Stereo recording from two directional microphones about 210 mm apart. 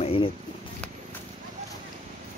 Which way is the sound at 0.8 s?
5° left (ahead or behind).